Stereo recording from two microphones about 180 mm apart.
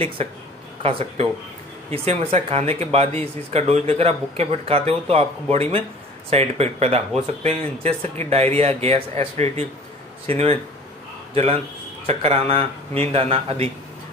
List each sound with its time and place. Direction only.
0.8 s speech: 30° right (ahead or behind)